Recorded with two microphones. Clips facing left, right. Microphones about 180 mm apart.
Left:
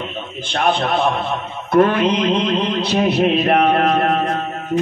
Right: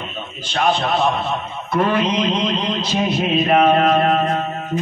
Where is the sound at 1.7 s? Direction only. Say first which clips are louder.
Left 4 dB; 55° left (ahead or behind).